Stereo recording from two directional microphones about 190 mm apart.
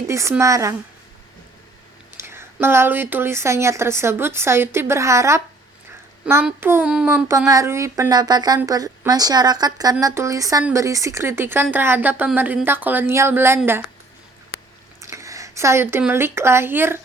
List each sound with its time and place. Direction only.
0.1 s speech: 15° right (ahead or behind)
2.1 s speech: 15° right (ahead or behind)
6.2 s child singing: 10° right (ahead or behind)
10.0 s speech: 15° right (ahead or behind)
15.0 s speech: 15° right (ahead or behind)